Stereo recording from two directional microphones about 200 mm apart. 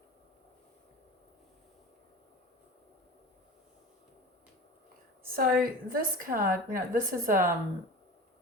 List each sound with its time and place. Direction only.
5.4 s a woman's voice: 45° right (ahead or behind)